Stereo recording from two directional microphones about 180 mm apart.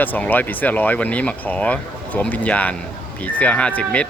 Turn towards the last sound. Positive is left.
turn(degrees=5)  # may be behind; listen again after turning